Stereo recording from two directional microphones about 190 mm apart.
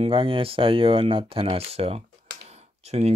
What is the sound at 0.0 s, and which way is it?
Speech, 25° right (ahead or behind).